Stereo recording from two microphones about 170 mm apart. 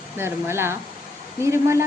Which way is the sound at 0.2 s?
15° right (ahead or behind).